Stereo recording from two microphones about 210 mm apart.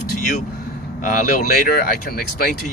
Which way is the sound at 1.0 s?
40° left (ahead or behind).